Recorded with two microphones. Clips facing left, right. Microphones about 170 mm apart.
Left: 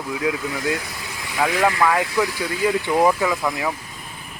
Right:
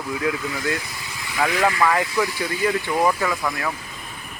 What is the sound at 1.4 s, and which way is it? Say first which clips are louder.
Speech: left 1 dB; 5° left (ahead or behind).